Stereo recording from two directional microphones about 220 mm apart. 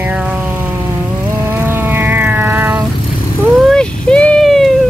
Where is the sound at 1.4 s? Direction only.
10° right (ahead or behind).